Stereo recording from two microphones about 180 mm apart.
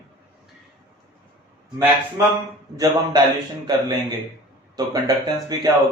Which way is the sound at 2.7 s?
20° right (ahead or behind).